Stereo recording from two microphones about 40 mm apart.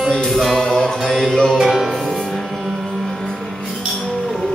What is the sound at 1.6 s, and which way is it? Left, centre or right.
Music, centre.